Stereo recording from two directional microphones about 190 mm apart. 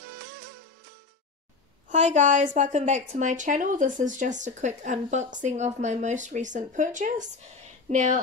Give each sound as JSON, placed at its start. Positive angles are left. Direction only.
{"t": 0.0, "sound": "music", "side_deg": -50}
{"t": 1.9, "sound": "a woman's voice", "side_deg": -40}